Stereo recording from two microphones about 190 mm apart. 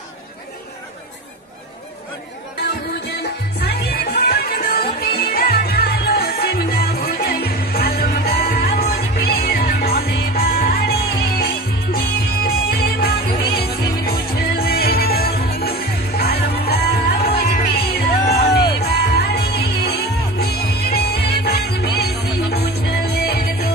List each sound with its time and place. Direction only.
3.1 s music: 55° left (ahead or behind)